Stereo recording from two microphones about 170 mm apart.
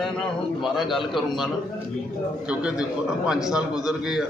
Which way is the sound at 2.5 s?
5° right (ahead or behind).